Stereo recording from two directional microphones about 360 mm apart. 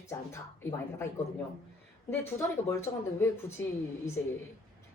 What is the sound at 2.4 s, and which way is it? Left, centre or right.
Speech, centre.